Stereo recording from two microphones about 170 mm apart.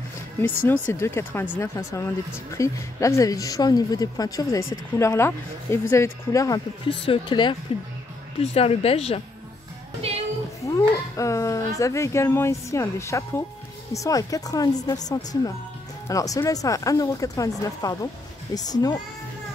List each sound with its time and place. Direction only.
0.4 s a woman's voice: 15° left (ahead or behind); by 9.2 s 35° left (ahead or behind)
10.0 s music: 35° right (ahead or behind)
10.6 s a woman's voice: 20° left (ahead or behind)
16.1 s a woman's voice: 20° left (ahead or behind)